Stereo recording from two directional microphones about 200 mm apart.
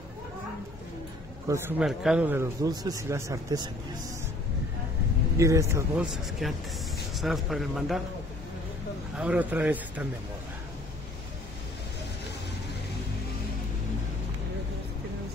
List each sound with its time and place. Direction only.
1.5 s speech: 5° right (ahead or behind)
2.6 s speech: 20° right (ahead or behind)
5.4 s speech: 15° right (ahead or behind)
6.4 s a man's voice: centre (ahead or behind)
9.1 s speech: 5° right (ahead or behind)